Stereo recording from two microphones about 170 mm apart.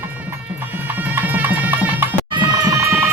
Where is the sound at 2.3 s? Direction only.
20° right (ahead or behind).